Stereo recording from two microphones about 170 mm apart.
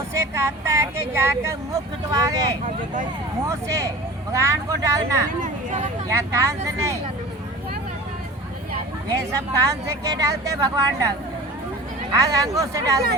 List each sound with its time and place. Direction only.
0.1 s speech: 15° right (ahead or behind)
5.4 s speech: 45° right (ahead or behind)
6.1 s speech: 15° right (ahead or behind)
9.0 s speech: 20° right (ahead or behind)
12.1 s speech: 20° right (ahead or behind)